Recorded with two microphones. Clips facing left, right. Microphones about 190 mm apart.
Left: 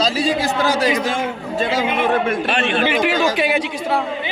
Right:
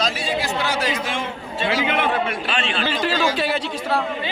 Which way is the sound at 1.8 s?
60° right (ahead or behind).